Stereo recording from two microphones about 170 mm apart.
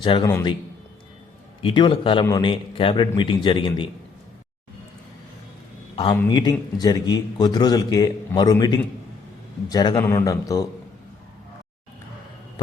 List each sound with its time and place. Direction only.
0.0 s a man's voice: 30° left (ahead or behind)
1.6 s a man's voice: 30° left (ahead or behind)
6.2 s a man's voice: 25° left (ahead or behind)